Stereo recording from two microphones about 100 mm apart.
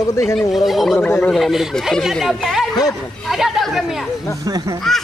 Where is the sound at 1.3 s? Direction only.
Centre (ahead or behind).